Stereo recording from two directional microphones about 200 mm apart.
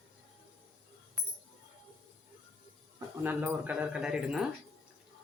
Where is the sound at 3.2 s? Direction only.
10° right (ahead or behind).